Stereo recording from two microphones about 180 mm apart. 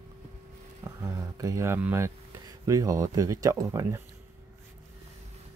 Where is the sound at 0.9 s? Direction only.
20° right (ahead or behind).